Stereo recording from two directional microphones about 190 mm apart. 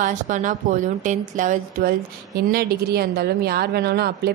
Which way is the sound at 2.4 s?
50° right (ahead or behind).